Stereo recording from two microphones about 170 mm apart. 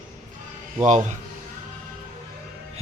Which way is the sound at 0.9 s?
45° right (ahead or behind).